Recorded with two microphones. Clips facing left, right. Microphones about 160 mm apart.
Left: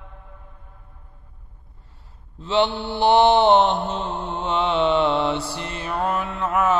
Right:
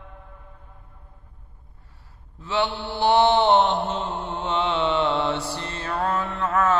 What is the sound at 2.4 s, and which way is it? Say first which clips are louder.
Mantra: left 4 dB; 20° left (ahead or behind).